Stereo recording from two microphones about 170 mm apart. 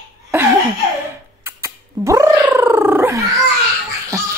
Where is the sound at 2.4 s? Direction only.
15° right (ahead or behind).